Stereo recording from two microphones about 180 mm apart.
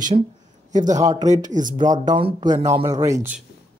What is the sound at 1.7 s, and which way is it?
Speech, 20° right (ahead or behind).